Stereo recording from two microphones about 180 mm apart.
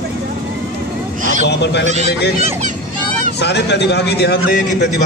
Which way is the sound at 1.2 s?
45° right (ahead or behind).